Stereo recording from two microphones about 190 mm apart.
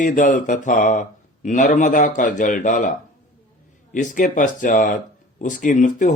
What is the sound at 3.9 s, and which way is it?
Speech, 45° left (ahead or behind).